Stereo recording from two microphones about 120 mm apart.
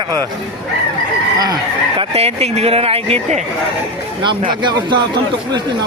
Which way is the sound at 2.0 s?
60° right (ahead or behind).